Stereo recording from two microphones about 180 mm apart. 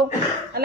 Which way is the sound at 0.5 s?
60° right (ahead or behind).